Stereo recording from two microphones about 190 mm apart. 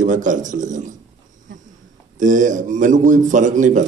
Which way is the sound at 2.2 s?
40° right (ahead or behind).